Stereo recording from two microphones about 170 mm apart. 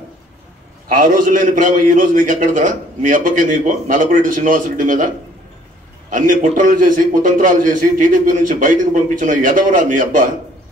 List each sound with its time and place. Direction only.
0.8 s a man's voice: 50° right (ahead or behind)